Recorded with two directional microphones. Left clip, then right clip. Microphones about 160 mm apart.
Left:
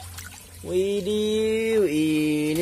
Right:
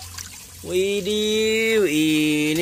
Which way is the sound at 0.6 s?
10° left (ahead or behind).